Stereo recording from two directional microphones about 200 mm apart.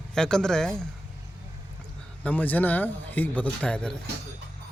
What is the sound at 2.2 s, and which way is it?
Speech, 10° left (ahead or behind).